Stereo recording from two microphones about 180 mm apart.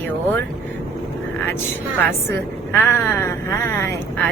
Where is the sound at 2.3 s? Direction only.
15° left (ahead or behind).